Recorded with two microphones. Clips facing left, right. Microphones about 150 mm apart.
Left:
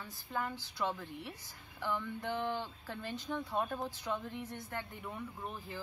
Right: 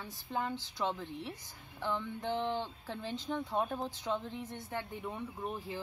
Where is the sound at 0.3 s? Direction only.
20° right (ahead or behind).